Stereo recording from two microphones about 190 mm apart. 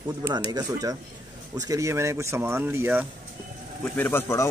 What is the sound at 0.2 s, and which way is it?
Speech, 20° right (ahead or behind).